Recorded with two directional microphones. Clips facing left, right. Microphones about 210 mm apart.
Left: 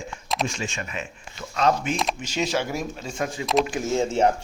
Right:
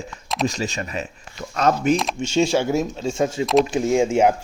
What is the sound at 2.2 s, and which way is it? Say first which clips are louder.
Speech: right 7 dB; 25° right (ahead or behind).